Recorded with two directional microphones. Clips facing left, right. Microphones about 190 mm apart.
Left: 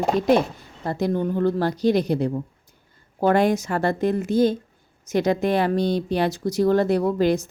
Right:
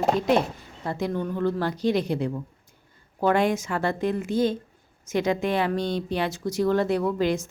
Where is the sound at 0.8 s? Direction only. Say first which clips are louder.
Left 4 dB; 40° left (ahead or behind).